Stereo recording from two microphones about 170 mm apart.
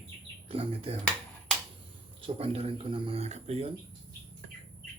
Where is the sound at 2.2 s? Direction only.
35° right (ahead or behind).